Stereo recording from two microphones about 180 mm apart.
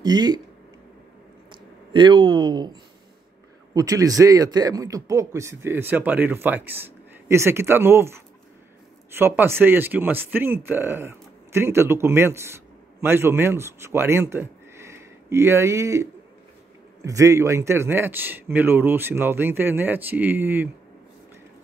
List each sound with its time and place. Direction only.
0.0 s speech: 25° right (ahead or behind)
1.5 s a sound: 25° right (ahead or behind)
3.7 s speech: 20° right (ahead or behind)